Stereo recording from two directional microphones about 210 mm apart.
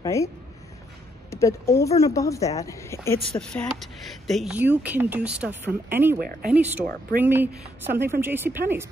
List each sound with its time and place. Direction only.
0.0 s speech: 15° left (ahead or behind)
1.3 s speech: 15° left (ahead or behind)
3.8 s speech: centre (ahead or behind)
6.1 s speech: 45° right (ahead or behind)
6.5 s speech: 5° right (ahead or behind)